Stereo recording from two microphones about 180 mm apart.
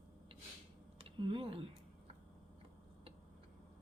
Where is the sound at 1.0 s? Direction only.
30° right (ahead or behind).